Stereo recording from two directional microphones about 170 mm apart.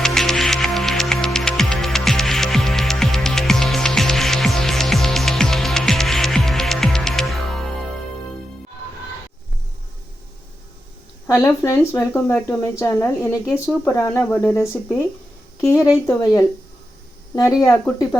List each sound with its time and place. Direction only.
0.0 s music: 5° left (ahead or behind)
11.3 s speech: 15° left (ahead or behind)
17.3 s speech: 20° left (ahead or behind)